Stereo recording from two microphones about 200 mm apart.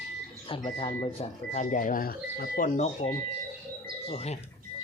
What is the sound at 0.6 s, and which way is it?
Speech, 25° left (ahead or behind).